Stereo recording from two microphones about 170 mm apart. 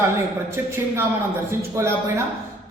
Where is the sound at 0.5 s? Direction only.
15° right (ahead or behind).